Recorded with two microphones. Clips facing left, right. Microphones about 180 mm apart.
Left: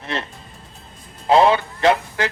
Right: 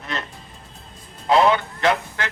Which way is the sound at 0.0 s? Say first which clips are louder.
Left 3 dB; 30° left (ahead or behind).